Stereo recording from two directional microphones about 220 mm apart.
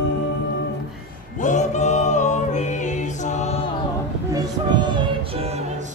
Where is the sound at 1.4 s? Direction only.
35° left (ahead or behind).